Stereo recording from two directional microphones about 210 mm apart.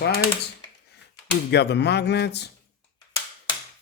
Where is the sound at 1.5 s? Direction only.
55° left (ahead or behind).